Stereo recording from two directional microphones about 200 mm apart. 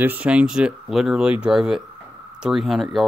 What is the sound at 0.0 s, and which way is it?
Speech, 10° right (ahead or behind).